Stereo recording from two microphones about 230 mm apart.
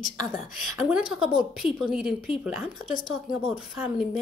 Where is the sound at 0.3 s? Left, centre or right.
Centre.